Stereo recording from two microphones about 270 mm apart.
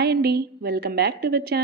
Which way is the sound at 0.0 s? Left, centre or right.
Right.